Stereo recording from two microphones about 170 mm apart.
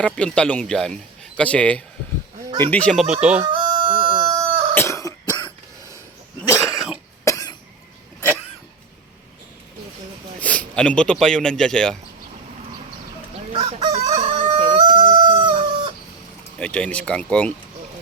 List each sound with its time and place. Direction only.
0.0 s speech: 5° left (ahead or behind)
3.4 s chicken: 25° right (ahead or behind)
4.7 s cough: 15° left (ahead or behind)
6.7 s cough: centre (ahead or behind)
7.3 s cough: 20° left (ahead or behind)
10.4 s speech: 10° left (ahead or behind)
13.5 s crowing: 35° right (ahead or behind)
15.1 s chicken: 30° right (ahead or behind)
16.6 s speech: 5° left (ahead or behind)